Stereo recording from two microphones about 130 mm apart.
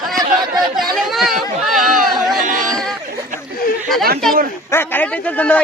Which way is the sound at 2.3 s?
80° right.